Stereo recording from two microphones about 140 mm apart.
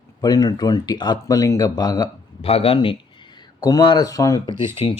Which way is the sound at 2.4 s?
45° left (ahead or behind).